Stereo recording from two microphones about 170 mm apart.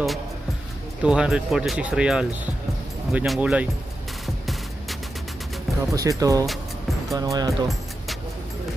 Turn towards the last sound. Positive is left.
turn(degrees=-20)  # may be behind; listen again after turning